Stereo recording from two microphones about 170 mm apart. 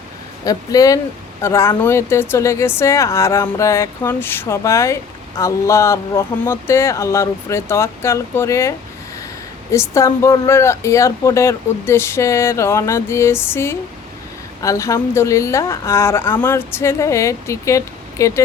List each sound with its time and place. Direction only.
0.4 s speech: 20° left (ahead or behind)
9.7 s speech: 15° left (ahead or behind)